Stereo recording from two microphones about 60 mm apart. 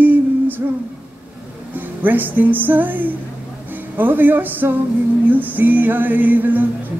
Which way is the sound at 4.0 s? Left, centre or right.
Right.